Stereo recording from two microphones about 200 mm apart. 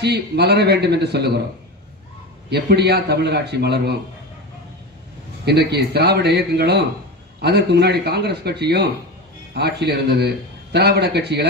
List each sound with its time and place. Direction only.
0.0 s a man's voice: 55° right (ahead or behind)
2.5 s a man's voice: 55° right (ahead or behind)
5.4 s a man's voice: 55° right (ahead or behind)